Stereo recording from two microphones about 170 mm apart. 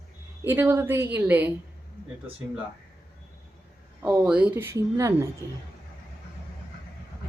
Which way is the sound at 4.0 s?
10° right (ahead or behind).